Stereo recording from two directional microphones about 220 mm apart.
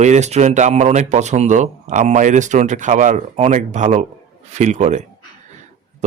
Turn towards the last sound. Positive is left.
turn(degrees=-35)  # may be behind; listen again after turning